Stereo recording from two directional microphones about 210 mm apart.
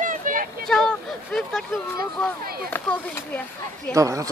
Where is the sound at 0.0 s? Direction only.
40° right (ahead or behind).